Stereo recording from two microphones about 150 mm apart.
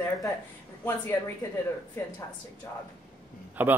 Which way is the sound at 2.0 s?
15° left (ahead or behind).